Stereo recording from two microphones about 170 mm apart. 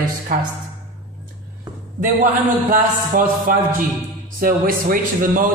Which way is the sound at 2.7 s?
55° right (ahead or behind).